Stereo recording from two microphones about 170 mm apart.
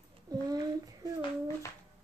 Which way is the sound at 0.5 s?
20° right (ahead or behind).